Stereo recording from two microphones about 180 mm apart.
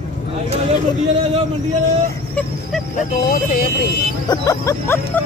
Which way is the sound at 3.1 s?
50° left (ahead or behind).